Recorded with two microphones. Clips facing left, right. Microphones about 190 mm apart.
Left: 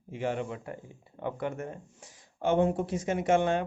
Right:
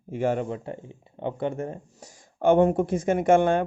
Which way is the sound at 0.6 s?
25° right (ahead or behind).